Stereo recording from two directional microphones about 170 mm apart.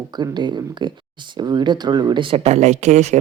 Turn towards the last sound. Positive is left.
turn(degrees=-45)  # may be behind; listen again after turning